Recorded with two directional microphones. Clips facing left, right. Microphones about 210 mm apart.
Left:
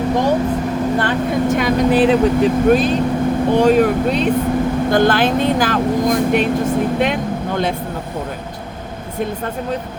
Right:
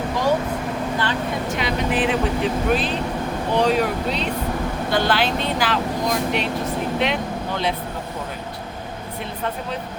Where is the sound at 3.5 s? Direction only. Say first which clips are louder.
Left 6 dB; 50° left (ahead or behind).